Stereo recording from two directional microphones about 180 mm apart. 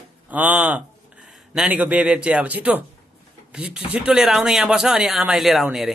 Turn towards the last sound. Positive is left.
turn(degrees=0)  # may be behind; listen again after turning